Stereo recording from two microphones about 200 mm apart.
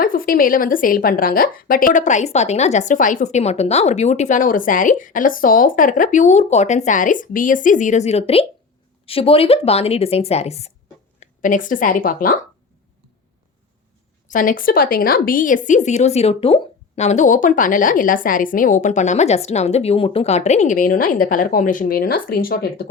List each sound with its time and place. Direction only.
0.0 s a woman's voice: 45° left (ahead or behind)
14.3 s a woman's voice: 40° left (ahead or behind)